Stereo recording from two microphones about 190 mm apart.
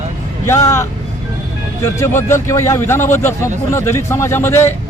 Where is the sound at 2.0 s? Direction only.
15° left (ahead or behind).